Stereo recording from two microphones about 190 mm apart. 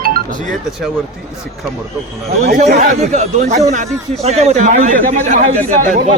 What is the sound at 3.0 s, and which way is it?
Speech, 40° right (ahead or behind).